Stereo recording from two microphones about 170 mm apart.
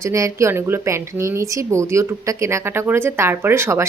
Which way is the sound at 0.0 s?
20° right (ahead or behind).